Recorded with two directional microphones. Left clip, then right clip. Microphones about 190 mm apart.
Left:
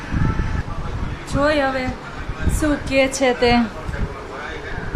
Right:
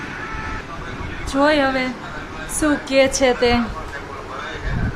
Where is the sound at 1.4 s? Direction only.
15° right (ahead or behind); by 3.6 s centre (ahead or behind).